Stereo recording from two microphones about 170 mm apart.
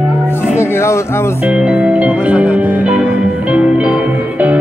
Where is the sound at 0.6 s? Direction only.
15° left (ahead or behind).